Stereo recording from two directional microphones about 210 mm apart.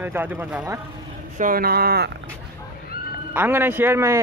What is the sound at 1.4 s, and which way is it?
Speech, 45° right (ahead or behind).